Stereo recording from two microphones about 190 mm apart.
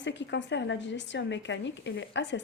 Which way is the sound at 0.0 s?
70° left (ahead or behind).